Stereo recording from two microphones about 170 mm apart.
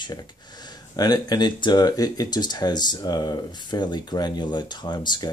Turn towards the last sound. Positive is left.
turn(degrees=25)  # may be behind; listen again after turning